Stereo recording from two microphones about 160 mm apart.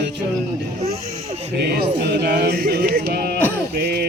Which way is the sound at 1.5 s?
90° right.